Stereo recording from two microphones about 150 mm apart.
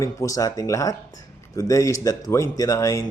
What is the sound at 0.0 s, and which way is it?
Speech, 20° left (ahead or behind).